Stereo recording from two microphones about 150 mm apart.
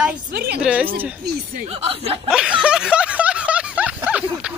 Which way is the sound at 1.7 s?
40° right (ahead or behind).